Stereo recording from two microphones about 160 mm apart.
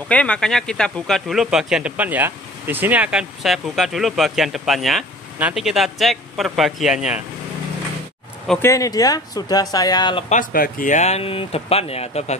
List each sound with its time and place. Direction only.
0.1 s speech: 5° left (ahead or behind)
8.5 s speech: 20° left (ahead or behind)
10.3 s speech: 60° left (ahead or behind); by 12.4 s 40° left (ahead or behind)